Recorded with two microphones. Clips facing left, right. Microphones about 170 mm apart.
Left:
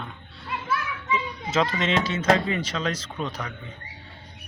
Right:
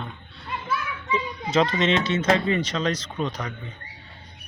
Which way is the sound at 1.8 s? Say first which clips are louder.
Right 1 dB; 5° left (ahead or behind).